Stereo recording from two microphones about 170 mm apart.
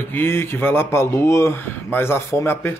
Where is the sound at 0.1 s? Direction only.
15° left (ahead or behind).